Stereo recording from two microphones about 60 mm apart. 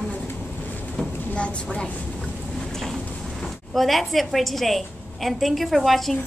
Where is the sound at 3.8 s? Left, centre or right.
Centre.